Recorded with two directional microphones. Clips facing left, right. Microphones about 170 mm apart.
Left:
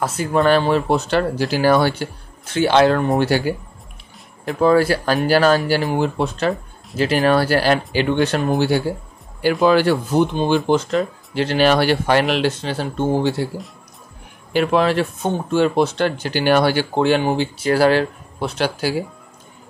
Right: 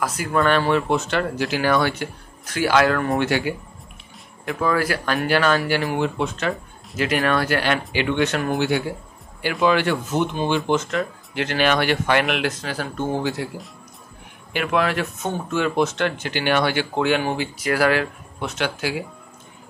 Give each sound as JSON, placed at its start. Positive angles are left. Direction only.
{"t": 0.0, "sound": "speech", "side_deg": 30}
{"t": 3.2, "sound": "speech", "side_deg": 35}
{"t": 14.5, "sound": "speech", "side_deg": 35}